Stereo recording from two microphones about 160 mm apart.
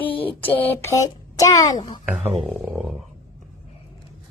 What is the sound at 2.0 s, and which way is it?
Speech, 10° right (ahead or behind).